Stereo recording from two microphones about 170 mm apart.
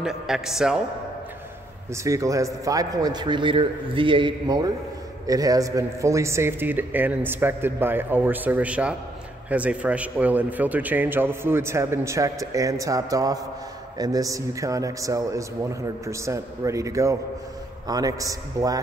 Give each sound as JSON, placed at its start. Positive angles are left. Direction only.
{"t": 0.0, "sound": "a man's voice", "side_deg": -5}
{"t": 2.0, "sound": "a man's voice", "side_deg": -20}